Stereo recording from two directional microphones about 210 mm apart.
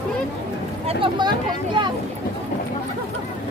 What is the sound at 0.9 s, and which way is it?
Speech, 20° right (ahead or behind).